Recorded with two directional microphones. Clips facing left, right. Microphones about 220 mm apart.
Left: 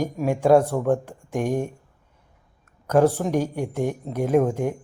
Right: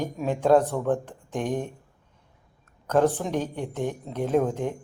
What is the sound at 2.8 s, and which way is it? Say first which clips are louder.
Speech: left 3 dB; 10° left (ahead or behind).